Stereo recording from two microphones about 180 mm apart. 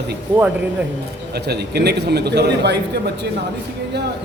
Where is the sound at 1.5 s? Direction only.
65° right (ahead or behind).